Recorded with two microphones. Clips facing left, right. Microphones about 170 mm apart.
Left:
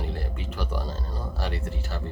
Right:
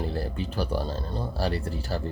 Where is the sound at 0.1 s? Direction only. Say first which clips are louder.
Right 4 dB; 35° right (ahead or behind).